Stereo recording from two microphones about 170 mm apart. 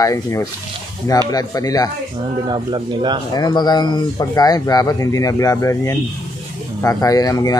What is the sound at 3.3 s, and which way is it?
Speech, 25° left (ahead or behind).